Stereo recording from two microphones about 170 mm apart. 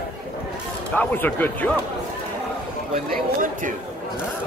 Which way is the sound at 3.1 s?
50° right (ahead or behind).